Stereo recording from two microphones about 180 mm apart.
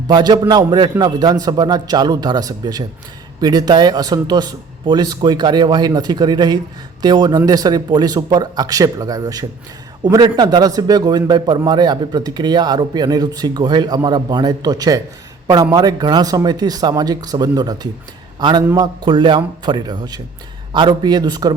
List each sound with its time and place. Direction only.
0.1 s a man's voice: 25° right (ahead or behind)
19.0 s a man's voice: 25° right (ahead or behind)